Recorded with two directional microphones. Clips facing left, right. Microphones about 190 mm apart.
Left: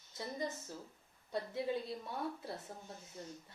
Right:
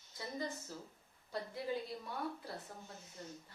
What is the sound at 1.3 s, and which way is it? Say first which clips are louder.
Speech: left 3 dB; 25° left (ahead or behind).